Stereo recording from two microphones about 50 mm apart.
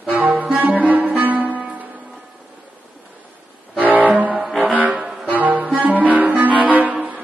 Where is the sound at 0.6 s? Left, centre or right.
Right.